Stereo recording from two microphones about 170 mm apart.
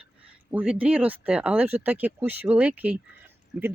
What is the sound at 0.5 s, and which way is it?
Speech, 5° right (ahead or behind).